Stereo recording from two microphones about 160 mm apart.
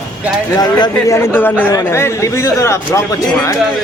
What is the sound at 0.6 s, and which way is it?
Speech, 20° left (ahead or behind).